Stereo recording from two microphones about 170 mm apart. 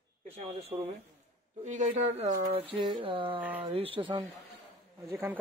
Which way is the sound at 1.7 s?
45° right (ahead or behind).